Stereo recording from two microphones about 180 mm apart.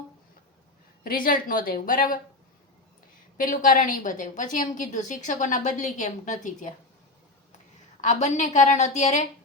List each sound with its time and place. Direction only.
1.0 s a woman's voice: 50° left (ahead or behind)
3.3 s a woman's voice: 50° left (ahead or behind)
8.0 s a woman's voice: 40° left (ahead or behind)